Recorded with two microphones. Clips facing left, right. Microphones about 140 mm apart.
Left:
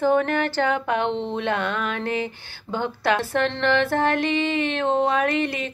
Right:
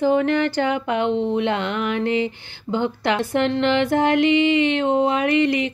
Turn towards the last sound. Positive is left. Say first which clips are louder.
# right 4 dB
turn(degrees=-15)  # may be behind; listen again after turning